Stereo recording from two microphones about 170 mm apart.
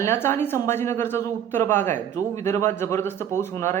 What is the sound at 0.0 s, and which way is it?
A man's voice, 15° left (ahead or behind).